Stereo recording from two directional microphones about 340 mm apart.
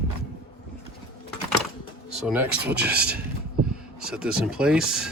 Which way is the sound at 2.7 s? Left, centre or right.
Right.